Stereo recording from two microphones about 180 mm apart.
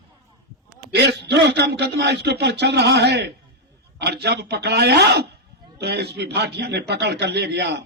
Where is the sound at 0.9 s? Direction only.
70° right (ahead or behind).